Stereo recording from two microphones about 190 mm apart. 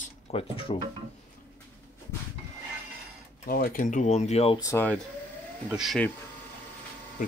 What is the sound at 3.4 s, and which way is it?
Speech, 50° left (ahead or behind).